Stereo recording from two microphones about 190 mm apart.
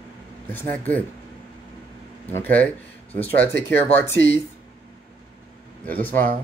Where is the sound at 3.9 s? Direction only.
10° left (ahead or behind).